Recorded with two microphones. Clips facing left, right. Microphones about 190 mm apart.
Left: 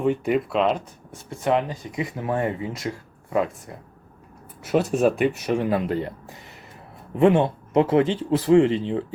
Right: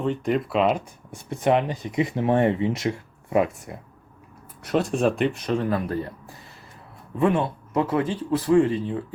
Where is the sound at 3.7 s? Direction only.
15° right (ahead or behind).